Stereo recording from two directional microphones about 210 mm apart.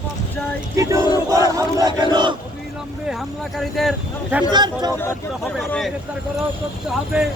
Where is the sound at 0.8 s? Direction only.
15° right (ahead or behind).